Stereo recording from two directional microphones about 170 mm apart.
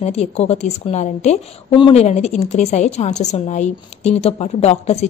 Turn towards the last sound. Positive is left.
turn(degrees=40)  # may be behind; listen again after turning